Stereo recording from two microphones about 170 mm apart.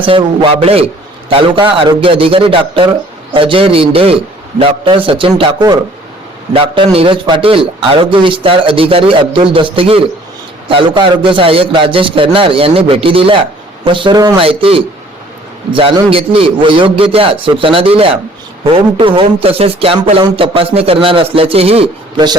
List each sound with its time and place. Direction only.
0.0 s a man's voice: 30° right (ahead or behind)